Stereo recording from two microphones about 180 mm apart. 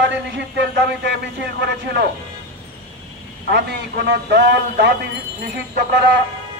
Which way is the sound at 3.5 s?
65° right (ahead or behind).